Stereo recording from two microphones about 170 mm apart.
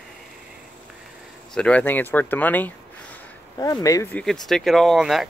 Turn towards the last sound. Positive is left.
turn(degrees=0)  # may be behind; listen again after turning